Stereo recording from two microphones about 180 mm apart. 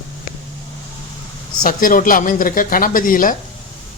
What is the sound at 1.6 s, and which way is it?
Speech, 50° left (ahead or behind).